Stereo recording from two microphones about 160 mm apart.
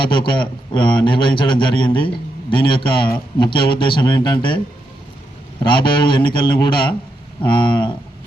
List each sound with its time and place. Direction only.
0.0 s a man's voice: 30° left (ahead or behind)
5.6 s a man's voice: 30° left (ahead or behind)